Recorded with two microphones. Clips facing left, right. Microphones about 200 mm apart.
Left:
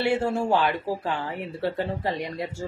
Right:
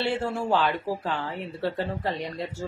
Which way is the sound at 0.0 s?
15° left (ahead or behind).